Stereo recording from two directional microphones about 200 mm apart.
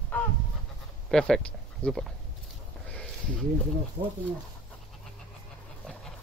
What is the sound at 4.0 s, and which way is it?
Speech, 45° right (ahead or behind).